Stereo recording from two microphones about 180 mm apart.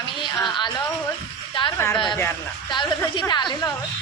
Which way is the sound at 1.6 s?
30° left (ahead or behind).